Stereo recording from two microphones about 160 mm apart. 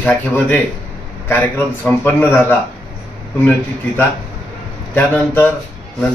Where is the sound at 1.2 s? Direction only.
15° left (ahead or behind).